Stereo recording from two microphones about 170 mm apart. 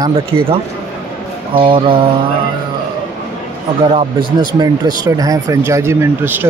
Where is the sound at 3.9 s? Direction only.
25° right (ahead or behind).